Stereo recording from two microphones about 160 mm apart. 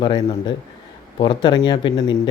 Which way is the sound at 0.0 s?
30° left (ahead or behind).